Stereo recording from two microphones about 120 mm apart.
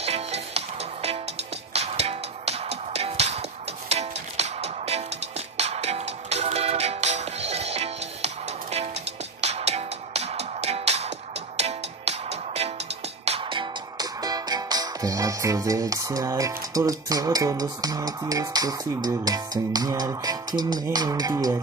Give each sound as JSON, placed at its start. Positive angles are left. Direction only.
{"t": 0.0, "sound": "music", "side_deg": -60}
{"t": 9.4, "sound": "music", "side_deg": -65}
{"t": 13.5, "sound": "music", "side_deg": -40}